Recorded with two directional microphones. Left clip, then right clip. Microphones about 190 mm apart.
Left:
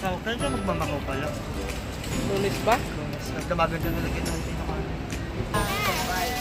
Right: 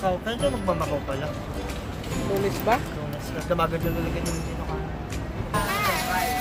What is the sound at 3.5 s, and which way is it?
Speech, 50° right (ahead or behind).